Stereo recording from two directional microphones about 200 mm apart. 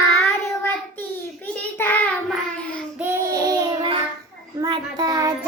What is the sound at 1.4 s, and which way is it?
Child singing, 10° left (ahead or behind).